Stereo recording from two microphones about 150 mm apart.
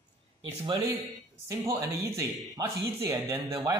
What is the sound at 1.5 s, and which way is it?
Speech, 20° right (ahead or behind).